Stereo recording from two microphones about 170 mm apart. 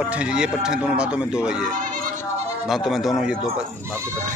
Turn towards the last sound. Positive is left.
turn(degrees=0)  # may be behind; listen again after turning